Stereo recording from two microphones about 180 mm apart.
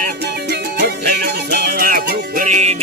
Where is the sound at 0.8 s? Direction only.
65° right (ahead or behind).